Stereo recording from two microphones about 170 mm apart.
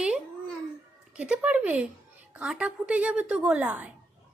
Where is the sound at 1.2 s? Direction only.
10° right (ahead or behind).